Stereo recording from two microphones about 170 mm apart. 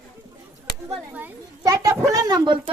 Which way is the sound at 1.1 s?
10° right (ahead or behind).